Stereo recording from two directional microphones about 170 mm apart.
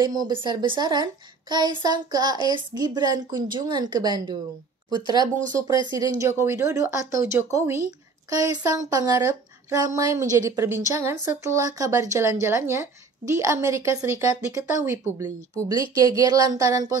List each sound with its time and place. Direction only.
0.0 s a child's voice: 25° right (ahead or behind)